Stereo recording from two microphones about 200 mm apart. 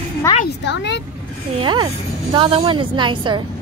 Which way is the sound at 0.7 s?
60° left (ahead or behind).